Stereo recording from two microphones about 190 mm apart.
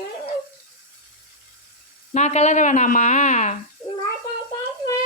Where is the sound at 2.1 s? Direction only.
35° left (ahead or behind).